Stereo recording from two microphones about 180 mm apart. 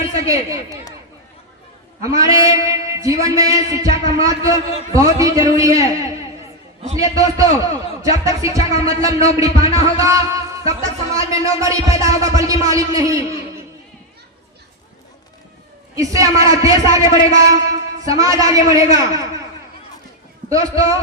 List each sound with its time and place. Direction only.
0.3 s music: 20° right (ahead or behind)
2.0 s music: 20° right (ahead or behind)
6.9 s a man's voice: 20° right (ahead or behind)
9.7 s music: 20° right (ahead or behind)
16.0 s music: 20° right (ahead or behind)
18.0 s a man's voice: 20° right (ahead or behind)
20.5 s music: 20° right (ahead or behind)